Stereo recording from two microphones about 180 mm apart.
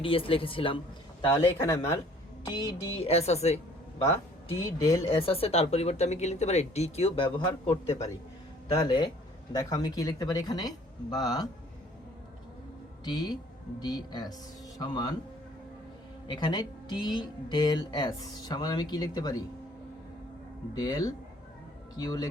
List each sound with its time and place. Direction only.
0.0 s speech: 30° left (ahead or behind)
1.5 s speech: 15° left (ahead or behind)
3.1 s speech: 35° left (ahead or behind)
4.6 s speech: 20° left (ahead or behind)
5.0 s speech: 30° left (ahead or behind)
8.8 s speech: 25° left (ahead or behind)
13.1 s speech: 25° left (ahead or behind)
16.2 s speech: 25° left (ahead or behind)
20.7 s speech: 20° left (ahead or behind)